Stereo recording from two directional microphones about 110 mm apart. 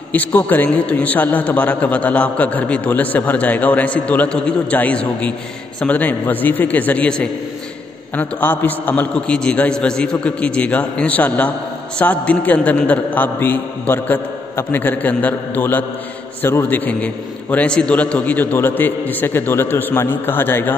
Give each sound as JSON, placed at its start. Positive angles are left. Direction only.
{"t": 0.1, "sound": "a man's voice", "side_deg": 15}